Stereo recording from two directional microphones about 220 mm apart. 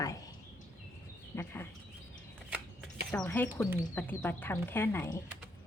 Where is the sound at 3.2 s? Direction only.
10° left (ahead or behind).